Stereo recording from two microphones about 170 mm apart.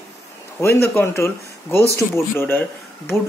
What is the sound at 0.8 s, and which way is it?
Speech, 15° left (ahead or behind).